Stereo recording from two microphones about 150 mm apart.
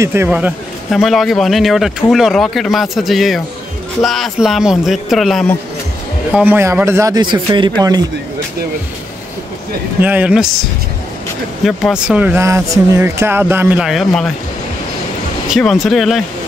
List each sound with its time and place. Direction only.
0.0 s speech: 15° right (ahead or behind)
0.9 s speech: centre (ahead or behind)
6.3 s speech: 10° right (ahead or behind); by 8.0 s 30° right (ahead or behind)
10.0 s speech: 10° right (ahead or behind)
11.6 s speech: 5° right (ahead or behind)
12.4 s speech: 20° right (ahead or behind); by 14.3 s centre (ahead or behind)
15.5 s speech: centre (ahead or behind)